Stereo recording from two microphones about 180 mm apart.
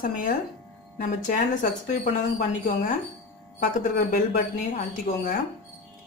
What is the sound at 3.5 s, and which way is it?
Speech, 50° left (ahead or behind).